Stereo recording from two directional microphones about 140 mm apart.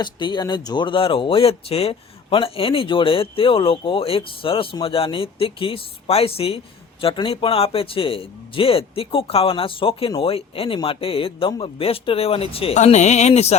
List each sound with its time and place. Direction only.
0.0 s a man's voice: 35° left (ahead or behind); by 13.6 s 50° left (ahead or behind)